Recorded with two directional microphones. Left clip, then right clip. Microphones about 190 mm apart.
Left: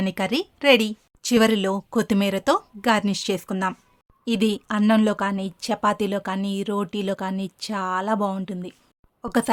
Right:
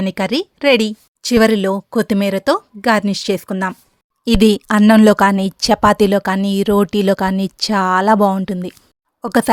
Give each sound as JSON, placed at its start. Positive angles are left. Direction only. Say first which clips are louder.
{"t": 0.0, "sound": "speech", "louder": "right 6 dB", "side_deg": -25}
{"t": 4.3, "sound": "speech", "louder": "right 10 dB", "side_deg": -45}